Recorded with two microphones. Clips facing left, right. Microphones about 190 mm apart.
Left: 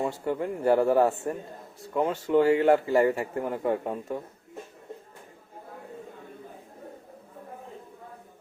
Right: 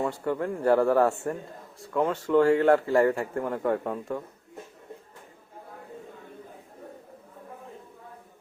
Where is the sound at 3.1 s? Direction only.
5° left (ahead or behind).